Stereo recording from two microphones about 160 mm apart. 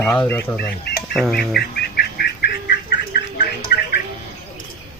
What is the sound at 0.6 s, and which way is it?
Speech, 75° left (ahead or behind).